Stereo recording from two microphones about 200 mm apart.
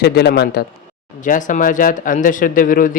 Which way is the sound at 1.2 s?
40° left (ahead or behind).